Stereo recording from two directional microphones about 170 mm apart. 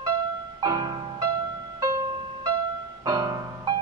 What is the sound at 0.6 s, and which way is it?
Music, 25° right (ahead or behind).